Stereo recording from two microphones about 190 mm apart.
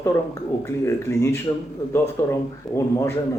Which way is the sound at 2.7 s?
Centre (ahead or behind).